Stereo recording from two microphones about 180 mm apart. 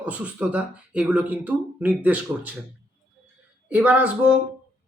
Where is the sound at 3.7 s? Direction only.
10° right (ahead or behind).